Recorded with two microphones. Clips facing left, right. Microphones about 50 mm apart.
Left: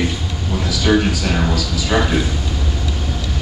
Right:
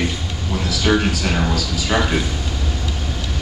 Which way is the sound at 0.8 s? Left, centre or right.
Centre.